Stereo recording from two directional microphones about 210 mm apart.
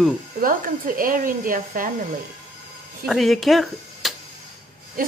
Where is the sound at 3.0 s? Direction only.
Centre (ahead or behind).